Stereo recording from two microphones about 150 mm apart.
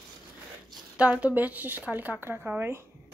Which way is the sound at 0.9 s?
10° right (ahead or behind).